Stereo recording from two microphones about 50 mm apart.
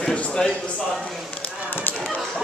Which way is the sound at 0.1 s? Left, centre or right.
Left.